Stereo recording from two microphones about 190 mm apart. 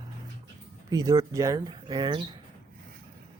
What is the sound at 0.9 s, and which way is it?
Speech, 20° right (ahead or behind).